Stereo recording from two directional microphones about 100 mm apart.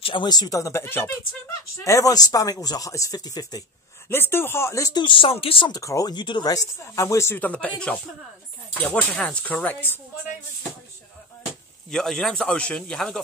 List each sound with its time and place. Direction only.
0.0 s speech: 50° left (ahead or behind); by 1.1 s 25° left (ahead or behind)
1.9 s speech: 35° left (ahead or behind)
4.1 s speech: 25° left (ahead or behind)
4.9 s speech: 55° left (ahead or behind)
5.7 s speech: 35° left (ahead or behind)
6.1 s speech: 50° left (ahead or behind)
6.5 s speech: 35° left (ahead or behind)
7.3 s speech: 15° left (ahead or behind)
11.9 s speech: 5° left (ahead or behind)